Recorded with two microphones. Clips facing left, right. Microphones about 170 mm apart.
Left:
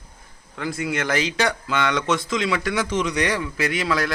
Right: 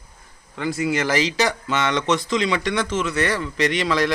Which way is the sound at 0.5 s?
Centre (ahead or behind).